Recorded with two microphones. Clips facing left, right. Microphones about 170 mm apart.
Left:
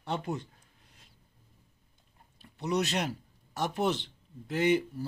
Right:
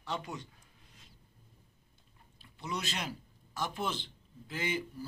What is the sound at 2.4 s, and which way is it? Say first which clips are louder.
A man's voice: left 9 dB; 65° left (ahead or behind).